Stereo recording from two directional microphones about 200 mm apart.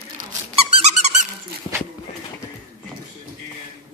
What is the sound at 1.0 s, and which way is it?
Dog, 35° right (ahead or behind).